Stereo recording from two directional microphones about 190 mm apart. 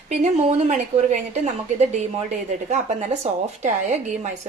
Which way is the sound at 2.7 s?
35° right (ahead or behind).